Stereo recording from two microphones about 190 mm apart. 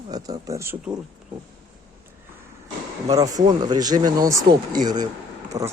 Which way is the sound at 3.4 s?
20° right (ahead or behind).